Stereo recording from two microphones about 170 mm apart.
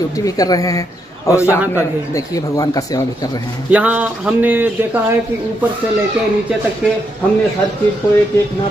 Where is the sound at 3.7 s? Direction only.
10° right (ahead or behind).